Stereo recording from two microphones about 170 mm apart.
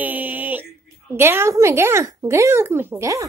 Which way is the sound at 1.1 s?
15° right (ahead or behind).